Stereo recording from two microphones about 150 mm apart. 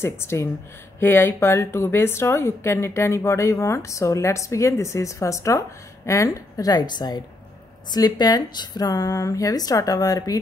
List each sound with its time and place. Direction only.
0.0 s speech: 15° left (ahead or behind)